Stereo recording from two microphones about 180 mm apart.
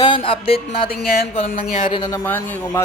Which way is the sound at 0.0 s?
30° left (ahead or behind).